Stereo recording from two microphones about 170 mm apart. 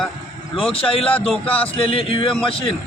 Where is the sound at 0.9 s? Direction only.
35° left (ahead or behind).